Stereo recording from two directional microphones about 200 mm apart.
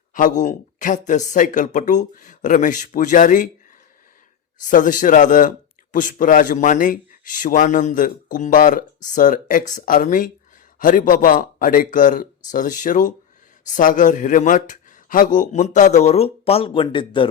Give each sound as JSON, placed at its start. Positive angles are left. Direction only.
{"t": 0.1, "sound": "a man's voice", "side_deg": 40}
{"t": 4.6, "sound": "a man's voice", "side_deg": 40}